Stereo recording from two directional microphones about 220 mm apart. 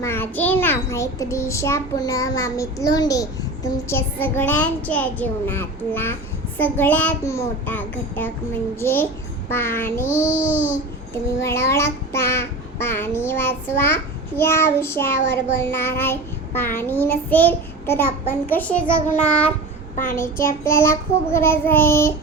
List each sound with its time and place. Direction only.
0.0 s a child's voice: 10° left (ahead or behind)
10.2 s a child's voice: 35° left (ahead or behind)
11.3 s a child's voice: 10° left (ahead or behind)